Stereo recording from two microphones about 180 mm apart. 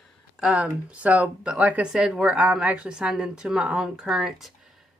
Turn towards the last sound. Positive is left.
turn(degrees=0)  # may be behind; listen again after turning